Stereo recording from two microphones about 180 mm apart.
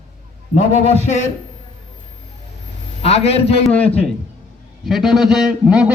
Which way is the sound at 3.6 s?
10° left (ahead or behind).